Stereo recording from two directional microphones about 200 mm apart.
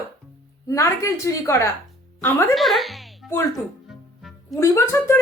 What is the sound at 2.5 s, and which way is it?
Speech, centre (ahead or behind).